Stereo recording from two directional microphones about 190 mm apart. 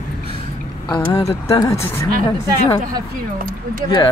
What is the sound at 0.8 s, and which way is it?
Speech, 25° left (ahead or behind).